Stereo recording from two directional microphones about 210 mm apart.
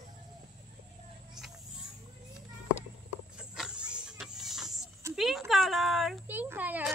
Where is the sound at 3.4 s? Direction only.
5° right (ahead or behind).